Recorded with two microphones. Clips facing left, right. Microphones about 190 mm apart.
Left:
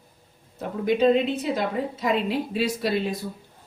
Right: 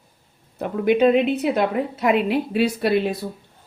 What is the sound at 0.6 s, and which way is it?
A woman's voice, 65° right (ahead or behind).